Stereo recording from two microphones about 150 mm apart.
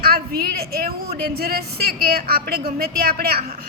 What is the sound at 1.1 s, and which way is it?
A woman's voice, 90° right.